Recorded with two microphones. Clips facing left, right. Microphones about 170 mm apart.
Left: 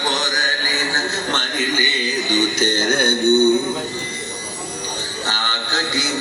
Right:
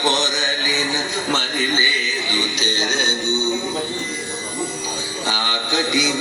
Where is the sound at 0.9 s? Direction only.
10° right (ahead or behind).